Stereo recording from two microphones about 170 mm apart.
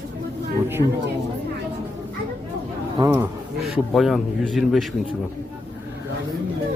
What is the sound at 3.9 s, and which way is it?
Speech, centre (ahead or behind).